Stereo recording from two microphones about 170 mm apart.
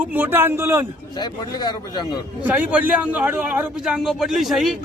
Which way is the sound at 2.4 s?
10° right (ahead or behind).